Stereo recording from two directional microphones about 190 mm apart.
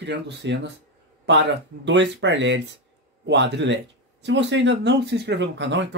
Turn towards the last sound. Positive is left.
turn(degrees=-70)  # may be behind; listen again after turning